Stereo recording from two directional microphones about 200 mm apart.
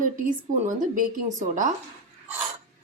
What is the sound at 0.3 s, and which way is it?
Speech, 40° right (ahead or behind).